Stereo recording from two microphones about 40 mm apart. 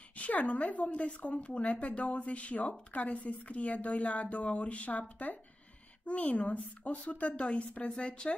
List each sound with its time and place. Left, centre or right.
0.1 s a woman's voice: left